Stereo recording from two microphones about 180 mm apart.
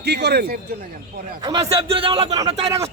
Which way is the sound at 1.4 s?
30° right (ahead or behind).